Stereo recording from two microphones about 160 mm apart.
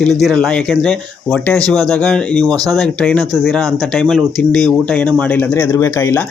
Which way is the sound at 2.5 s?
25° right (ahead or behind).